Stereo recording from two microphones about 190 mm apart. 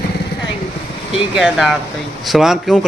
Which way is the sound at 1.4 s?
Centre (ahead or behind).